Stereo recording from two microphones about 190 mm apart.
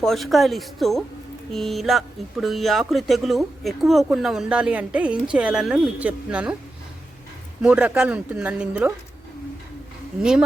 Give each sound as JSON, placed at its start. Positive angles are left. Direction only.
{"t": 0.0, "sound": "speech", "side_deg": 0}
{"t": 7.6, "sound": "speech", "side_deg": -5}